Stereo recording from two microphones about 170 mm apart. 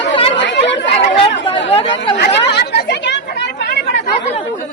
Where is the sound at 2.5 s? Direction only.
75° left (ahead or behind).